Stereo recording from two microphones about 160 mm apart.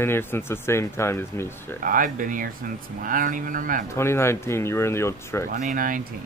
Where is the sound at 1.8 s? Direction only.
60° right (ahead or behind).